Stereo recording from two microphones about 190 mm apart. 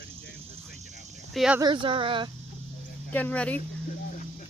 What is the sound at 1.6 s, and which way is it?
Speech, 25° right (ahead or behind).